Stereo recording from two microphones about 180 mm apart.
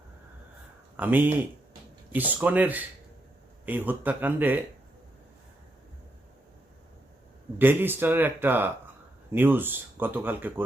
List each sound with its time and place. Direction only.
0.9 s speech: 10° right (ahead or behind)
7.6 s speech: 10° right (ahead or behind)